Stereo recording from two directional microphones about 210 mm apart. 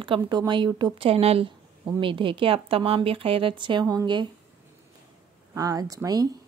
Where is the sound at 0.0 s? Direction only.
20° right (ahead or behind).